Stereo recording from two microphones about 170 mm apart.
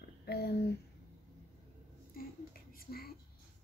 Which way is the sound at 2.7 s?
60° left (ahead or behind).